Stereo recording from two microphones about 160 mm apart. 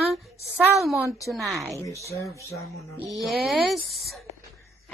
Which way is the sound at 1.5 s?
Centre (ahead or behind).